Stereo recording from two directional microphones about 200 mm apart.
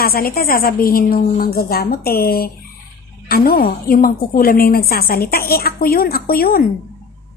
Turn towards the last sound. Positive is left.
turn(degrees=50)  # may be behind; listen again after turning